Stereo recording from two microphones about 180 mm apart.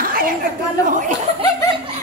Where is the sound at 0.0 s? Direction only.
50° right (ahead or behind).